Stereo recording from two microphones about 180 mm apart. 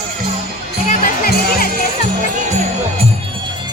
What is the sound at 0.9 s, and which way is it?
Music, 50° left (ahead or behind).